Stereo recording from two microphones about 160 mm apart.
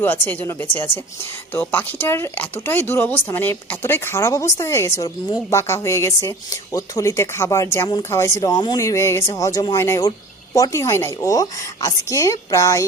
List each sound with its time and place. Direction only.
0.0 s a woman's voice: 10° left (ahead or behind)